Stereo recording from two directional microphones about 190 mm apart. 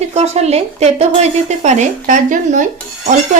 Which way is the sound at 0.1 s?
35° right (ahead or behind).